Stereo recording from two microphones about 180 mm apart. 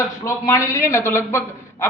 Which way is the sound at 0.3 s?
15° left (ahead or behind).